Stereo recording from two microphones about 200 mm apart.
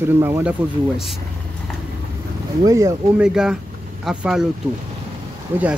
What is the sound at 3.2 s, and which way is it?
Speech, 5° right (ahead or behind).